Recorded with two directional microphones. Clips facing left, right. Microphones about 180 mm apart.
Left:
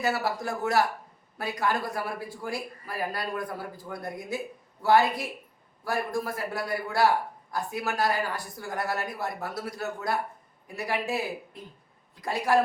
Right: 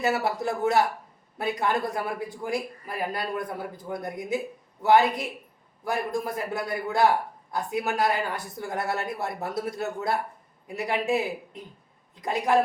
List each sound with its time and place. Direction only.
0.0 s speech: 25° right (ahead or behind)